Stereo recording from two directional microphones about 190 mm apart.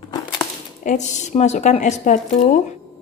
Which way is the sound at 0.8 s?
40° left (ahead or behind).